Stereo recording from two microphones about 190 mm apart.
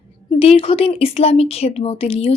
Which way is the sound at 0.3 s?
30° left (ahead or behind).